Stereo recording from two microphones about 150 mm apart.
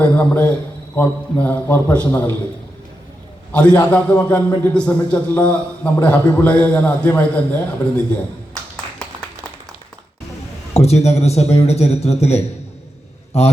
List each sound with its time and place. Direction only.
0.0 s a man's voice: 10° left (ahead or behind)
3.5 s a man's voice: 10° left (ahead or behind)
10.8 s a man's voice: 45° left (ahead or behind)